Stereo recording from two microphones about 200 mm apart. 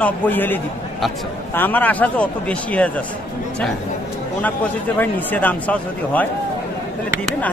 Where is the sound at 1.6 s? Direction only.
10° left (ahead or behind).